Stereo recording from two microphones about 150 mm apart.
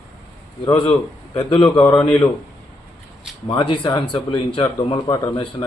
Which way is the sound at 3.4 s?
35° left (ahead or behind).